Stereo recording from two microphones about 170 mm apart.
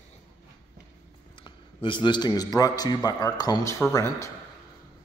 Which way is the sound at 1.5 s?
30° left (ahead or behind).